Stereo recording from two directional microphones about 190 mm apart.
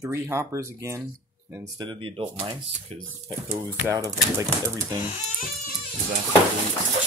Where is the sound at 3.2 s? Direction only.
20° right (ahead or behind).